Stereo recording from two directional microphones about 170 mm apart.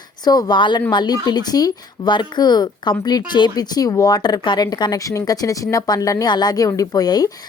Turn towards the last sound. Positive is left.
turn(degrees=20)  # may be behind; listen again after turning